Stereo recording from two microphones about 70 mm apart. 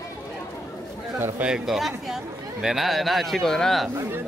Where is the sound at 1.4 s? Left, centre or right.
Centre.